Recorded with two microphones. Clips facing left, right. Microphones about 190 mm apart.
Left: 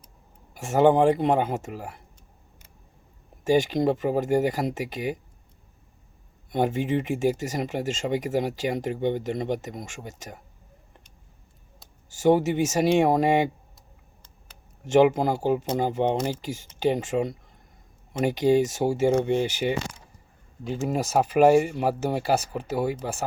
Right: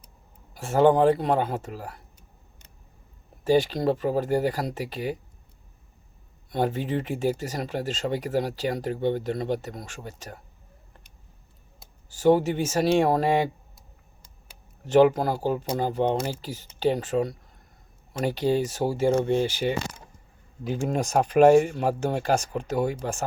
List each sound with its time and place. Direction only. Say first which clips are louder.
0.5 s speech: even; 10° left (ahead or behind)
3.4 s speech: even; 10° left (ahead or behind)
6.5 s speech: left 2 dB; 15° left (ahead or behind)
12.2 s speech: even; 15° left (ahead or behind)
15.1 s speech: left 2 dB; 15° left (ahead or behind)
20.8 s speech: left 1 dB; 5° left (ahead or behind)